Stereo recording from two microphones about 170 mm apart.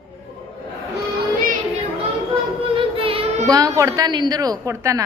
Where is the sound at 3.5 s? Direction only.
20° right (ahead or behind).